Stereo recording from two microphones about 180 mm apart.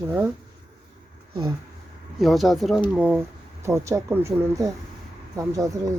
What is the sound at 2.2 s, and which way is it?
Speech, centre (ahead or behind).